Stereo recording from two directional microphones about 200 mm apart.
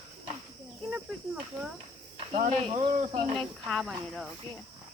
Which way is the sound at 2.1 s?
30° right (ahead or behind).